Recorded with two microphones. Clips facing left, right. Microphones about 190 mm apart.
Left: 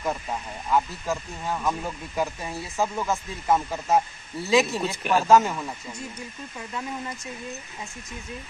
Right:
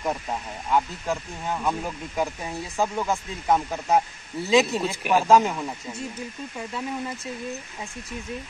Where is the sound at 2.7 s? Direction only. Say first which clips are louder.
Right 1 dB; centre (ahead or behind).